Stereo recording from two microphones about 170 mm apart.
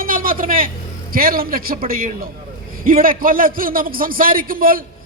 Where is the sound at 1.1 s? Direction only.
60° right (ahead or behind).